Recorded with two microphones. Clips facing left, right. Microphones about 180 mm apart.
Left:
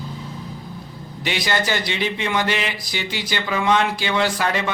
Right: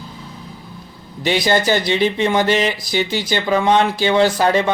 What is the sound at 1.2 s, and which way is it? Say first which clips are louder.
Speech: right 7 dB; 35° right (ahead or behind).